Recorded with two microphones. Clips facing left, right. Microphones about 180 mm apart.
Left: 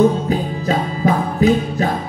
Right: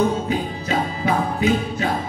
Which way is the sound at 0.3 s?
40° left (ahead or behind).